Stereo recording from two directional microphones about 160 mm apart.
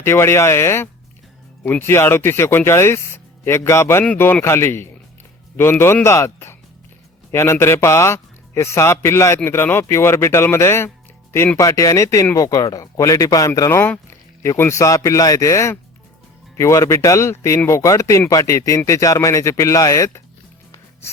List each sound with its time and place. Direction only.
0.0 s a man's voice: 15° left (ahead or behind)